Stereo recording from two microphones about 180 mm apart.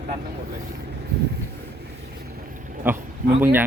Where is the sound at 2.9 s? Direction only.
10° right (ahead or behind).